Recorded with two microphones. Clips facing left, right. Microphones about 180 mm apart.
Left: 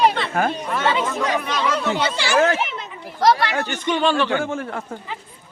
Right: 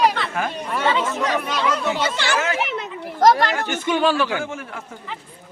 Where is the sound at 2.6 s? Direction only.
60° right (ahead or behind); by 3.5 s 45° right (ahead or behind).